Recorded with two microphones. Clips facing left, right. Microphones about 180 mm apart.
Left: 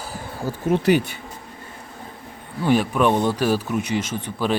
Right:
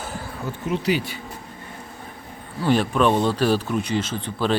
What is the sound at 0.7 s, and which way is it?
Speech, 55° left (ahead or behind).